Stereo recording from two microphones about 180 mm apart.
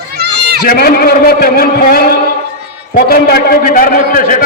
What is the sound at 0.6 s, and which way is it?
A man's voice, 55° left (ahead or behind).